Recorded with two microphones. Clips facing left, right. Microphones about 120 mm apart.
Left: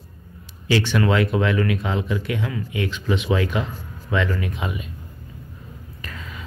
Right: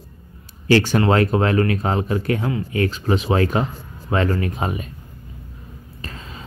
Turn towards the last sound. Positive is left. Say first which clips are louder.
# right 1 dB
turn(degrees=-30)  # may be behind; listen again after turning